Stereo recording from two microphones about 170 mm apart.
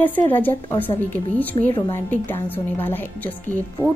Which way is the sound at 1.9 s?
10° left (ahead or behind).